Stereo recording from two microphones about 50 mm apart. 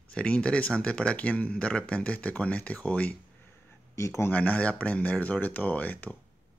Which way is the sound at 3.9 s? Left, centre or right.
Left.